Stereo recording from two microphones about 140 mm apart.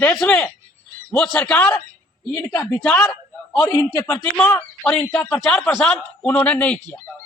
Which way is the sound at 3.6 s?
20° left (ahead or behind).